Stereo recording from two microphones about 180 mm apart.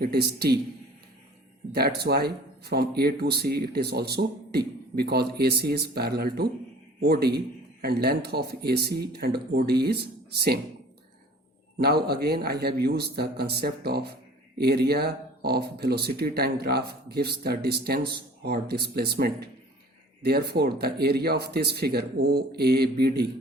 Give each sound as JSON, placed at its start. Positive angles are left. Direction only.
{"t": 0.0, "sound": "speech", "side_deg": -60}
{"t": 1.7, "sound": "speech", "side_deg": -60}
{"t": 11.8, "sound": "speech", "side_deg": -60}